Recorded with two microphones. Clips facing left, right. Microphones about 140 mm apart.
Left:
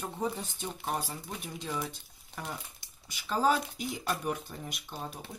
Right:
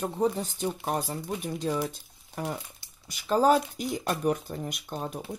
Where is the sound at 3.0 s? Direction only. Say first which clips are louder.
Right 5 dB; 45° right (ahead or behind).